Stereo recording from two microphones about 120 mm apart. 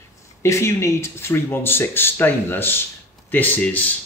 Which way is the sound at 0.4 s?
25° left (ahead or behind).